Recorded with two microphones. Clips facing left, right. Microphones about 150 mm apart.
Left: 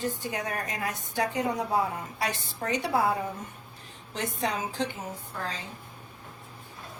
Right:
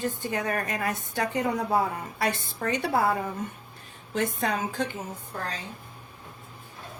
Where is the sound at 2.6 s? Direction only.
55° right (ahead or behind).